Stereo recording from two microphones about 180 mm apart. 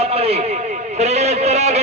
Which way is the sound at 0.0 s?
35° right (ahead or behind).